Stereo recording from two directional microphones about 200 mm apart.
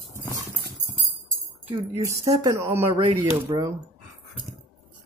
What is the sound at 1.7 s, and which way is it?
Speech, 15° right (ahead or behind).